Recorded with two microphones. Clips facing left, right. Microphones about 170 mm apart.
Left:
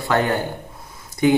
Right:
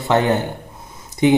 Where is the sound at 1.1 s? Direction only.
20° right (ahead or behind).